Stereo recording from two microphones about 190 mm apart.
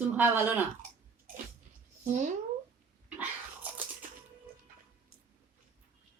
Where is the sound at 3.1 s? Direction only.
10° right (ahead or behind).